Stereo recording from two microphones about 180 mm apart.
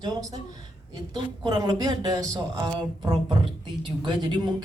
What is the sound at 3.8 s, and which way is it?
Speech, 25° right (ahead or behind).